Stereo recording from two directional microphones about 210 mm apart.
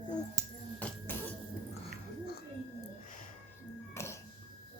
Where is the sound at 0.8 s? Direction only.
5° left (ahead or behind).